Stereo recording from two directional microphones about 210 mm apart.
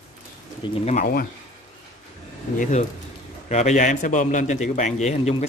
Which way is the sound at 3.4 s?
35° left (ahead or behind).